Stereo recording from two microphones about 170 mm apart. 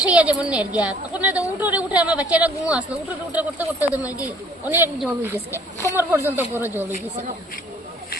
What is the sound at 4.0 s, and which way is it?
Speech, 20° left (ahead or behind).